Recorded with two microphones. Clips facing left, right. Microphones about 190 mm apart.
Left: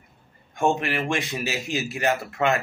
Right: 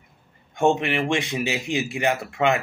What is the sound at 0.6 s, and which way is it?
Speech, 20° right (ahead or behind).